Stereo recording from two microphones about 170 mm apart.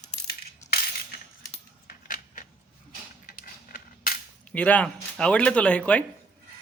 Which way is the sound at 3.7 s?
60° left (ahead or behind).